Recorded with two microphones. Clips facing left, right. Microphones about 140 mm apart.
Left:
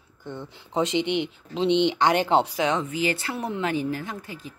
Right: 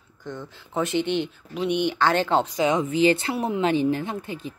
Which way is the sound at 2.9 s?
25° right (ahead or behind).